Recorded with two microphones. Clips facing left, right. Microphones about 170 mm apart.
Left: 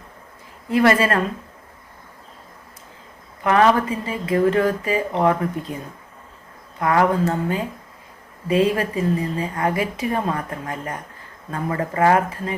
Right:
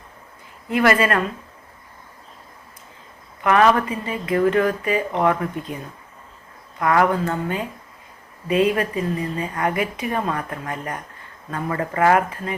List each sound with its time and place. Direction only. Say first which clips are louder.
0.7 s speech: left 1 dB; 30° left (ahead or behind)
3.4 s speech: even; 30° left (ahead or behind)
6.7 s a woman's voice: even; 30° left (ahead or behind)